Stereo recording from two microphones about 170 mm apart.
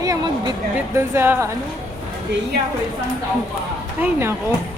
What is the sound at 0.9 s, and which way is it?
Speech, 15° right (ahead or behind).